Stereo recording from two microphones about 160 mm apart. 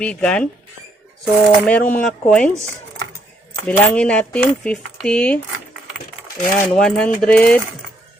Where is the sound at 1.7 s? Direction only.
10° left (ahead or behind).